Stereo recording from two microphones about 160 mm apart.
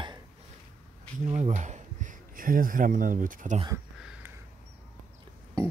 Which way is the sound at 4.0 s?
5° right (ahead or behind).